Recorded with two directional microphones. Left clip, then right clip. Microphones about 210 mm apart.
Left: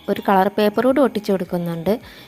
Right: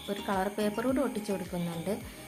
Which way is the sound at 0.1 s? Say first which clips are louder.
Left 15 dB; 40° left (ahead or behind).